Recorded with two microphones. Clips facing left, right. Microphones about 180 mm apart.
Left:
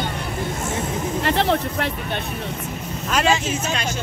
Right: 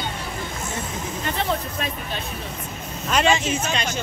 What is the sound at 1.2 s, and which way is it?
Speech, 75° left (ahead or behind).